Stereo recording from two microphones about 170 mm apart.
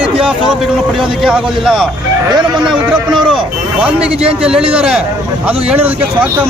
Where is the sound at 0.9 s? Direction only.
5° right (ahead or behind).